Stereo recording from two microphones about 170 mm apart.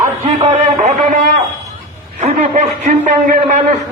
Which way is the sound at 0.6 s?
50° right (ahead or behind).